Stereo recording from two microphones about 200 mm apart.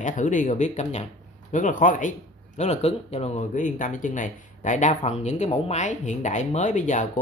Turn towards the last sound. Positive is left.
turn(degrees=35)  # may be behind; listen again after turning